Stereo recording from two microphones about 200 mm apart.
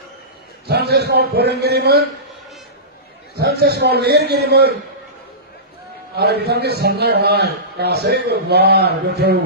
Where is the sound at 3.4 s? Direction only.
55° right (ahead or behind).